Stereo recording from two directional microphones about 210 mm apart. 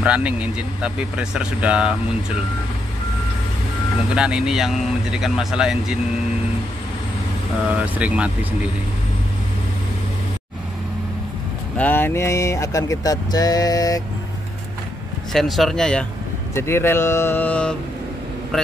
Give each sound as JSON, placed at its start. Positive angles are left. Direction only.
{"t": 0.0, "sound": "speech", "side_deg": -5}
{"t": 4.1, "sound": "speech", "side_deg": -5}
{"t": 7.8, "sound": "speech", "side_deg": -5}
{"t": 11.7, "sound": "speech", "side_deg": 10}
{"t": 15.3, "sound": "speech", "side_deg": 0}